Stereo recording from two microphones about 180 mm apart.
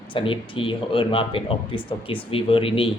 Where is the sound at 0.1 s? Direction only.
30° left (ahead or behind).